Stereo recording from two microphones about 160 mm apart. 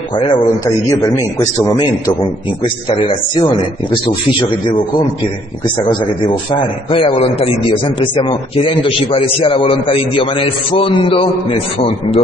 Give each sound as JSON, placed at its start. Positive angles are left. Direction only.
{"t": 0.1, "sound": "a man's voice", "side_deg": 30}
{"t": 2.9, "sound": "a man's voice", "side_deg": 35}